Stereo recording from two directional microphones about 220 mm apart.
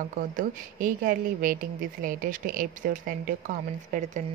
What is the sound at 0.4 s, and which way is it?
A woman's voice, 40° right (ahead or behind).